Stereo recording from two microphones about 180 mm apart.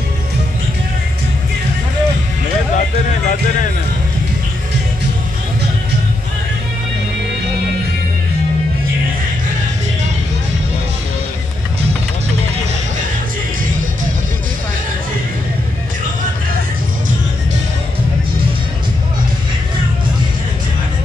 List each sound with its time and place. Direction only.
3.1 s music: 45° left (ahead or behind)